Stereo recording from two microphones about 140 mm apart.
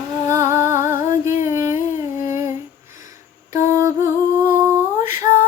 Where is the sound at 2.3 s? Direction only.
20° right (ahead or behind).